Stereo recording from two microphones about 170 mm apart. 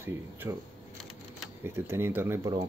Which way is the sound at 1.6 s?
15° right (ahead or behind).